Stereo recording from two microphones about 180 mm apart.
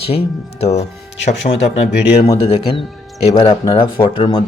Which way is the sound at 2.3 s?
35° left (ahead or behind).